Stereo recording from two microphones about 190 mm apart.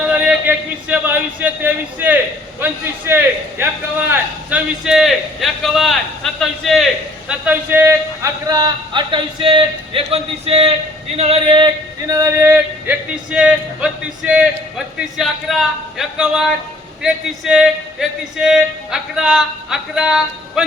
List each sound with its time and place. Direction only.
0.1 s speech: 5° right (ahead or behind)
2.6 s yodeling: 10° right (ahead or behind)
4.1 s a man's voice: 10° right (ahead or behind); by 10.7 s 30° right (ahead or behind)
11.2 s yodeling: 30° right (ahead or behind); by 14.4 s 5° right (ahead or behind)
15.2 s speech: centre (ahead or behind)